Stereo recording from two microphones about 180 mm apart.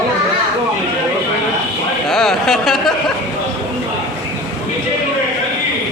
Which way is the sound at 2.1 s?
Centre (ahead or behind).